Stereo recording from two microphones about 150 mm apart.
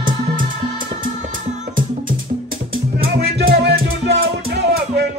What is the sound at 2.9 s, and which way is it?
Music, 85° right.